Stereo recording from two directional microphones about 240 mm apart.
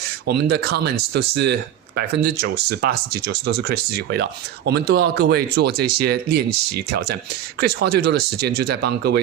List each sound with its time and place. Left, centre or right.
0.3 s speech: right